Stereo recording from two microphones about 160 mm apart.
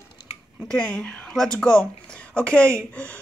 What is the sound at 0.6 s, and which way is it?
A woman's voice, 5° left (ahead or behind).